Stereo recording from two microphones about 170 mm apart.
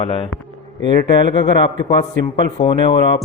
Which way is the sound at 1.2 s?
30° left (ahead or behind).